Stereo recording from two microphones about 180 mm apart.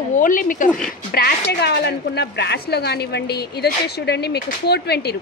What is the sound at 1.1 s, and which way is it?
Speech, 60° left (ahead or behind).